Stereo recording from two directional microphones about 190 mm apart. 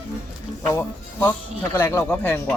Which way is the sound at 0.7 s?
10° left (ahead or behind).